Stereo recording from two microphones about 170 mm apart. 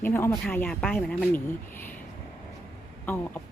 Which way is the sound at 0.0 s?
10° left (ahead or behind).